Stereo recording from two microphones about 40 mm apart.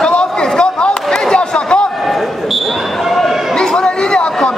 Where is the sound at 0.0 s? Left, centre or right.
Left.